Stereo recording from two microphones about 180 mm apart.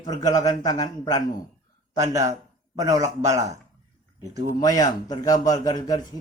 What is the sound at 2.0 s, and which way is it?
Speech, 20° right (ahead or behind).